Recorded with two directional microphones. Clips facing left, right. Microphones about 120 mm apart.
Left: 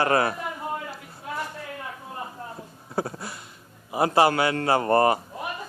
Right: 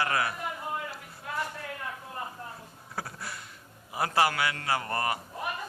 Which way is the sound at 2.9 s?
25° left (ahead or behind).